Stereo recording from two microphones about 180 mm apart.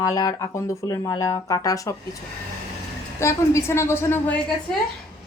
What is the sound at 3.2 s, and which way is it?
A woman's voice, 15° left (ahead or behind).